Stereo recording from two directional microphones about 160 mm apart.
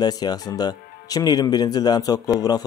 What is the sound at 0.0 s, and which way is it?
Speech, 25° left (ahead or behind).